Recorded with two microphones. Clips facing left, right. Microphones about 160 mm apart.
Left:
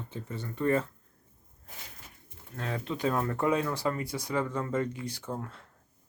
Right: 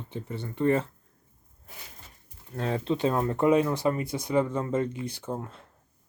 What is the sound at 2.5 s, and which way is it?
Speech, 30° right (ahead or behind).